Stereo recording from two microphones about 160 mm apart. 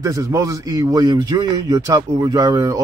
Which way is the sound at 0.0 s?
20° right (ahead or behind).